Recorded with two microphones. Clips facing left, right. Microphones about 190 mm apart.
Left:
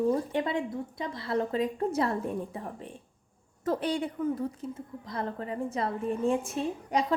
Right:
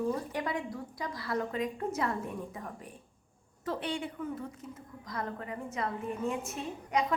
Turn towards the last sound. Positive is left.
turn(degrees=30)  # may be behind; listen again after turning